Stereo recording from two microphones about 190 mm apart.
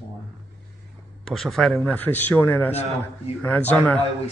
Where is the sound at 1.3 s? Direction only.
Centre (ahead or behind).